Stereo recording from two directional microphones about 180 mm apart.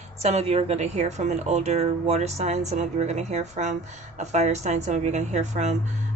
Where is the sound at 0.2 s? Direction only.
35° right (ahead or behind).